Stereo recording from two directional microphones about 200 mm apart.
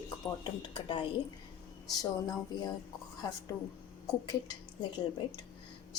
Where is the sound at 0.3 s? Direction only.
20° left (ahead or behind).